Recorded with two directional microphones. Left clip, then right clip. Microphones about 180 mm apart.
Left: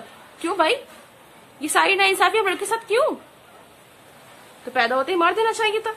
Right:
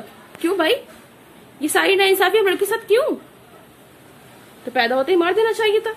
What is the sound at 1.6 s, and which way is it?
Speech, 15° left (ahead or behind).